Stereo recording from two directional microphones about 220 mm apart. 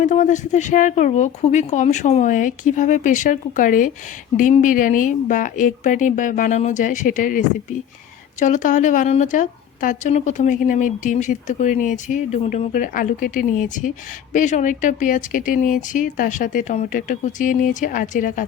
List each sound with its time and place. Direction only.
0.0 s a woman's voice: 35° left (ahead or behind)